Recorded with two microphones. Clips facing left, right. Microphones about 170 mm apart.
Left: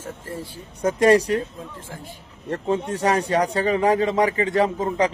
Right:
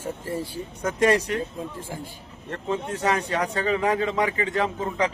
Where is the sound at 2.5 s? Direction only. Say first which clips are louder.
Left 5 dB; 35° left (ahead or behind).